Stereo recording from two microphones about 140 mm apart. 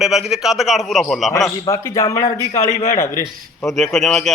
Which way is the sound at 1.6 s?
20° left (ahead or behind).